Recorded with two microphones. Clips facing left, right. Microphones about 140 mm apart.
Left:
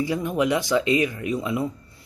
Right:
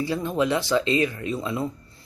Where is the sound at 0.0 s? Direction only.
15° left (ahead or behind).